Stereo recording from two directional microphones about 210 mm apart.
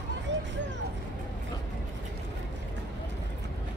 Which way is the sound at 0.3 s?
60° right (ahead or behind).